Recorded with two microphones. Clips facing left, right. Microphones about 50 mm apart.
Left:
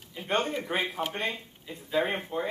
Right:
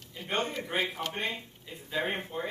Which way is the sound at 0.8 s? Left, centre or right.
Centre.